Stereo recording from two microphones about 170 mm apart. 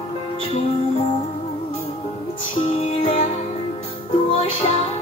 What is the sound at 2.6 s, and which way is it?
Music, 40° left (ahead or behind).